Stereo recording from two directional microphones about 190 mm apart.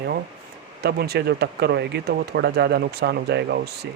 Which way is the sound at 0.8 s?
55° right (ahead or behind).